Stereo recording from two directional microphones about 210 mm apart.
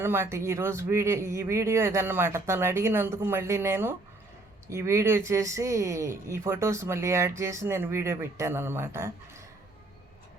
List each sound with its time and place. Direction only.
0.0 s speech: 10° right (ahead or behind)